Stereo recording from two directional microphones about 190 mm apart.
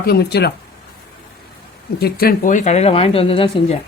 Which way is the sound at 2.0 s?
55° left (ahead or behind).